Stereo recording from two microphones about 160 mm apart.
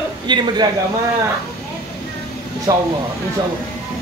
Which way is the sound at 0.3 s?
30° right (ahead or behind).